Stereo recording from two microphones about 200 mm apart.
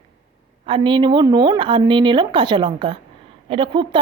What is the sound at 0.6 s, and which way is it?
A woman's voice, 25° right (ahead or behind).